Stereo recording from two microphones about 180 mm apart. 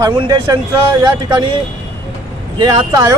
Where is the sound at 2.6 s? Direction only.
25° right (ahead or behind).